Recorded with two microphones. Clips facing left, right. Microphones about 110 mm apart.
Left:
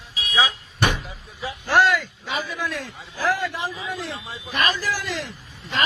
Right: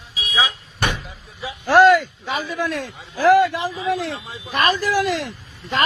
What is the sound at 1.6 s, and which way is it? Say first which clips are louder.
Speech: right 7 dB; 45° right (ahead or behind).